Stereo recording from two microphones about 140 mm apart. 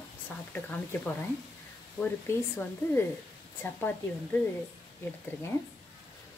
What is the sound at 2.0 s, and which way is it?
Speech, 15° left (ahead or behind).